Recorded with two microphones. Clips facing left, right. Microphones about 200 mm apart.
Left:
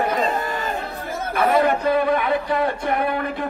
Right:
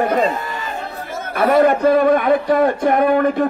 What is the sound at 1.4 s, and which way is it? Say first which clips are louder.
Speech: right 5 dB; 45° right (ahead or behind).